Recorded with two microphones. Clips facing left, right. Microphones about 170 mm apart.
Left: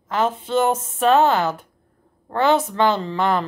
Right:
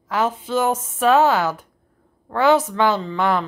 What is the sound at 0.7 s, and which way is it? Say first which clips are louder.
A woman's voice: right 2 dB; 25° left (ahead or behind).